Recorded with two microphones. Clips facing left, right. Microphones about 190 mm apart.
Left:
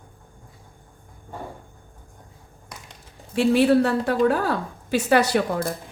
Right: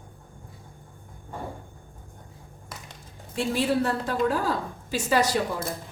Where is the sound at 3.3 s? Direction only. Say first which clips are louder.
Left 8 dB; 65° left (ahead or behind).